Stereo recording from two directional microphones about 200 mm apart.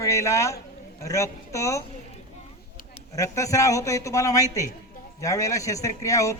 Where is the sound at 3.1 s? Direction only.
15° left (ahead or behind).